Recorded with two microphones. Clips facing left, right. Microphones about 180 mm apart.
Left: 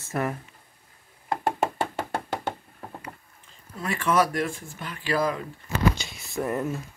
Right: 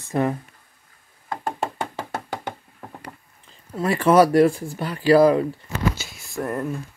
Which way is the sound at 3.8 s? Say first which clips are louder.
Right 8 dB; 35° right (ahead or behind).